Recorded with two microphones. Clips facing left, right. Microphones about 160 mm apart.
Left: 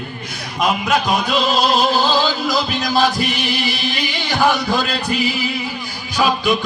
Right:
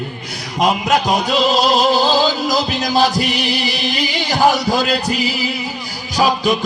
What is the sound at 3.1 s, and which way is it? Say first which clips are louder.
Music: right 2 dB; 85° right.